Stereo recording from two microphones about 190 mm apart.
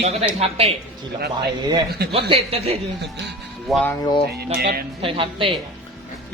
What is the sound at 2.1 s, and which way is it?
Speech, 30° right (ahead or behind).